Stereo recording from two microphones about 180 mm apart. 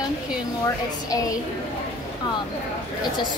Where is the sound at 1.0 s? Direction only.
20° left (ahead or behind).